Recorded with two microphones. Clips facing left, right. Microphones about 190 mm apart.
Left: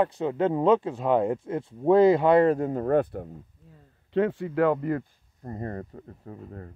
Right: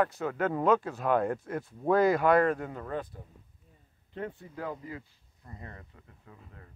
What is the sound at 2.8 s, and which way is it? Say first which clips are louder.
Speech: left 13 dB; 60° left (ahead or behind).